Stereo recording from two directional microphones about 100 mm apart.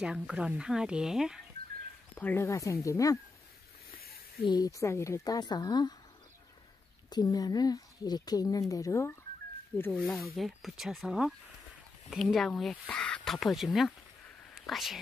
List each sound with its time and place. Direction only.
0.0 s speech: 10° right (ahead or behind)
2.1 s speech: 20° left (ahead or behind)
4.6 s speech: 30° left (ahead or behind)
7.1 s speech: 40° left (ahead or behind)
9.9 s speech: centre (ahead or behind)